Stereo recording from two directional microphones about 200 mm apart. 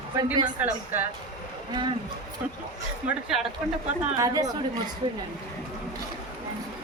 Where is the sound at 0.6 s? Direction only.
10° right (ahead or behind).